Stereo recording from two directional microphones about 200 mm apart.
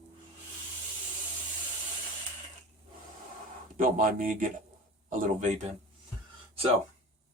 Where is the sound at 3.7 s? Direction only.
45° right (ahead or behind).